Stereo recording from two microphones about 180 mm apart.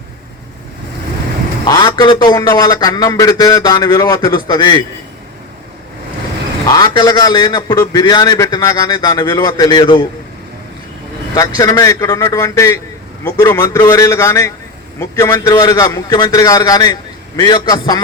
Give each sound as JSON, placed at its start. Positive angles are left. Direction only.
{"t": 1.6, "sound": "a man's voice", "side_deg": 20}
{"t": 6.7, "sound": "a man's voice", "side_deg": 20}
{"t": 11.3, "sound": "a man's voice", "side_deg": 20}